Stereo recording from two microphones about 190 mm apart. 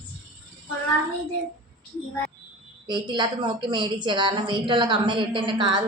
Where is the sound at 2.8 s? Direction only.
25° right (ahead or behind).